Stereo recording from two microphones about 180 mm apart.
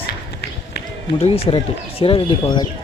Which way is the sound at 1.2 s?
30° left (ahead or behind).